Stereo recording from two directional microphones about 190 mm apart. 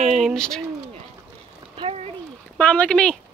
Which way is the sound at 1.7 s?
30° right (ahead or behind).